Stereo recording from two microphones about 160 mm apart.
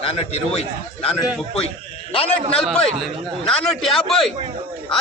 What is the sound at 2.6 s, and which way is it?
Speech, centre (ahead or behind).